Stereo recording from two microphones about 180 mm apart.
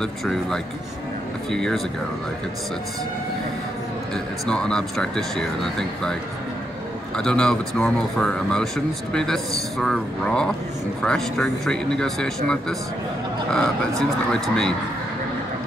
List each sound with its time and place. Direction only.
0.0 s speech: centre (ahead or behind)
4.1 s speech: 5° left (ahead or behind)
7.2 s speech: 5° left (ahead or behind)
14.3 s speech: 5° left (ahead or behind)